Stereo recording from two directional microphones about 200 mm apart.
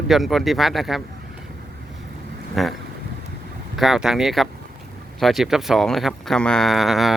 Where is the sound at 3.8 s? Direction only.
Centre (ahead or behind).